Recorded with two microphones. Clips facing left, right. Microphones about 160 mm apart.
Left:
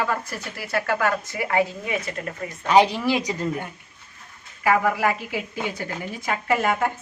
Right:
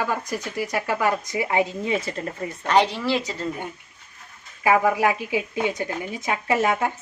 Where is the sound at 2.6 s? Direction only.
10° left (ahead or behind).